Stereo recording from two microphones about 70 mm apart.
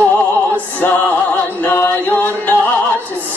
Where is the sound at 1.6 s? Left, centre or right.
Left.